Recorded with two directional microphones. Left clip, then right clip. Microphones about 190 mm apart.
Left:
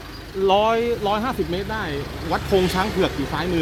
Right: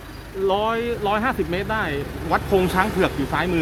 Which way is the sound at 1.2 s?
20° left (ahead or behind).